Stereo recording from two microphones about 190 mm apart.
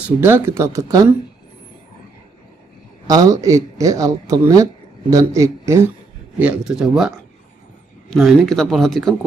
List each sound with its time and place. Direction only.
0.0 s speech: 10° right (ahead or behind)
3.1 s speech: 20° right (ahead or behind)
6.4 s speech: 5° right (ahead or behind)